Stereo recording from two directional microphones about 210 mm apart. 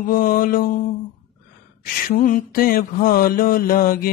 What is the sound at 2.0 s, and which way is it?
Mantra, 40° left (ahead or behind).